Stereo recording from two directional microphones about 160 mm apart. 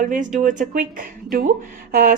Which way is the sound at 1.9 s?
60° right (ahead or behind).